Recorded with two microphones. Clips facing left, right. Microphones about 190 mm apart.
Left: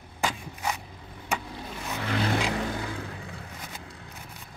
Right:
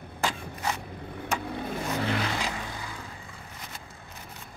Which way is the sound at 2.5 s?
65° left (ahead or behind).